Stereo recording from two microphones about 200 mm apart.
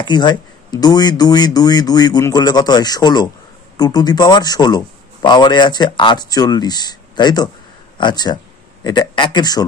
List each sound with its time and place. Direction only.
0.0 s a man's voice: 20° left (ahead or behind)